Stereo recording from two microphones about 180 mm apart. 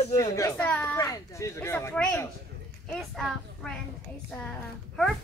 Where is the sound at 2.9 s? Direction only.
Centre (ahead or behind).